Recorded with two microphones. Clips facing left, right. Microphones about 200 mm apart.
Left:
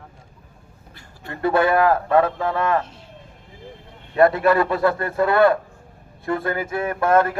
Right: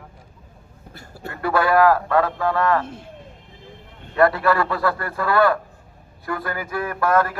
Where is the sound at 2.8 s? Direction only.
50° right (ahead or behind).